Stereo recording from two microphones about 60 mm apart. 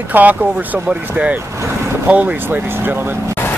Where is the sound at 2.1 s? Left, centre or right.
Right.